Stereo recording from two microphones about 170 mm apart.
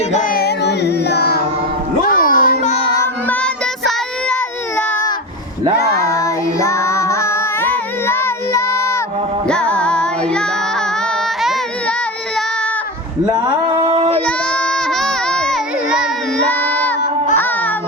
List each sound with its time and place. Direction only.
0.1 s carnatic music: 50° left (ahead or behind); by 1.4 s 70° left (ahead or behind)
2.0 s music: 55° left (ahead or behind)
2.6 s child singing: 40° left (ahead or behind)
3.0 s child singing: 10° left (ahead or behind)
4.8 s baby cry: 10° left (ahead or behind)
5.9 s child singing: 15° left (ahead or behind)
9.5 s music: 5° left (ahead or behind)
11.4 s a sound: centre (ahead or behind)
13.2 s a sound: 30° right (ahead or behind)
14.1 s child singing: 10° left (ahead or behind)
16.5 s a sound: 10° left (ahead or behind)
17.3 s music: 10° left (ahead or behind)